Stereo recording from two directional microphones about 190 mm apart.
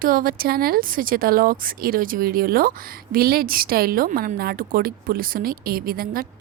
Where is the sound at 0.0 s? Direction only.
50° right (ahead or behind).